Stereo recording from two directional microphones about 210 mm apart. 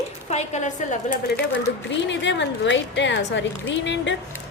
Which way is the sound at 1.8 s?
60° left (ahead or behind).